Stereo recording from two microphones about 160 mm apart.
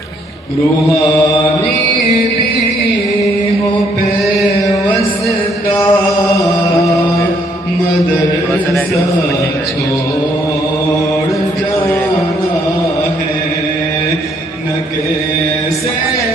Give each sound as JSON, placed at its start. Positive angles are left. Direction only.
{"t": 5.9, "sound": "chant", "side_deg": 20}